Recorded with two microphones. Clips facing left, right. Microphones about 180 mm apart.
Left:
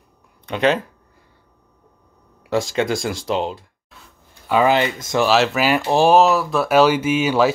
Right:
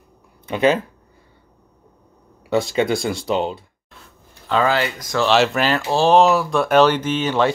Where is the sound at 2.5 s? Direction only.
Centre (ahead or behind).